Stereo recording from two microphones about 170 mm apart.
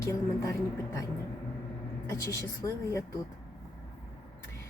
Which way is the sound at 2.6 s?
20° left (ahead or behind).